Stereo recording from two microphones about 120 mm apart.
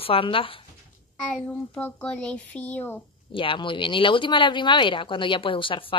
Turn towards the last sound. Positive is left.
turn(degrees=45)  # may be behind; listen again after turning